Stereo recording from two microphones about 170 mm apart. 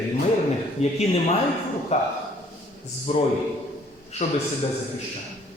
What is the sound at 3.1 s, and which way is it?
Speech, 35° left (ahead or behind).